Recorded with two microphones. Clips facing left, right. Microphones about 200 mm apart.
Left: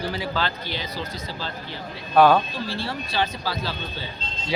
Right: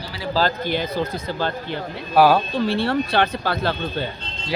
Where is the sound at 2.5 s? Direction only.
60° right (ahead or behind).